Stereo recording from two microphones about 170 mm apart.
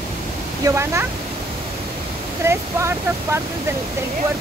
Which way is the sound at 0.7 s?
15° right (ahead or behind).